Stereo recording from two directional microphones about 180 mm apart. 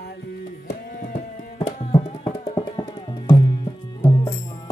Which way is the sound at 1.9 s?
30° left (ahead or behind).